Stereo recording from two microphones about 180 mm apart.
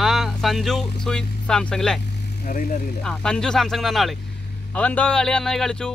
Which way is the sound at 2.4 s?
45° left (ahead or behind).